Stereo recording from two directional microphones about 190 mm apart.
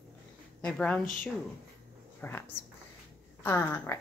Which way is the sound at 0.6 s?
5° left (ahead or behind).